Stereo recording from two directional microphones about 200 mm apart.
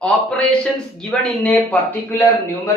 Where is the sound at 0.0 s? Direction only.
5° left (ahead or behind).